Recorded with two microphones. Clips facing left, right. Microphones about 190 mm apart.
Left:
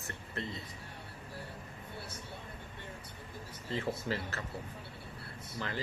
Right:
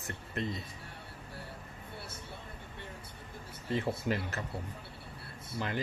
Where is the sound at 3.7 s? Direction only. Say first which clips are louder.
Right 3 dB; 20° right (ahead or behind).